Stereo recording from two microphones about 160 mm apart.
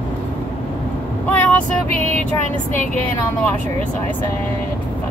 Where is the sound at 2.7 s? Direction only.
55° left (ahead or behind).